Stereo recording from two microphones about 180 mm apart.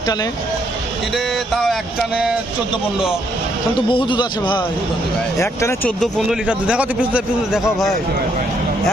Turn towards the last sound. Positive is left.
turn(degrees=-5)  # may be behind; listen again after turning